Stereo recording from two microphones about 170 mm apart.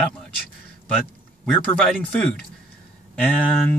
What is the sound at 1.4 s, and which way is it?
Speech, 5° left (ahead or behind).